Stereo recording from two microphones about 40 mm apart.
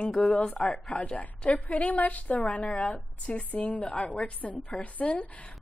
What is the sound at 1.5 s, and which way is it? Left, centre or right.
A woman's voice, left.